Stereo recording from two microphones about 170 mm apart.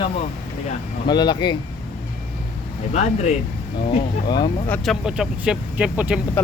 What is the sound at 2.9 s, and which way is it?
Speech, 40° left (ahead or behind).